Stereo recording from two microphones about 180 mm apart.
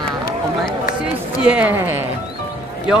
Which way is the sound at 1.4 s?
10° right (ahead or behind).